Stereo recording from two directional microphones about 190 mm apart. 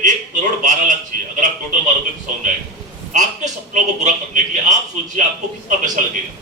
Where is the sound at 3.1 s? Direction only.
40° right (ahead or behind).